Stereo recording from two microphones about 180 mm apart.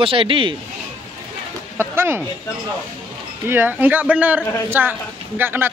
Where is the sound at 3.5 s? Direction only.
10° right (ahead or behind).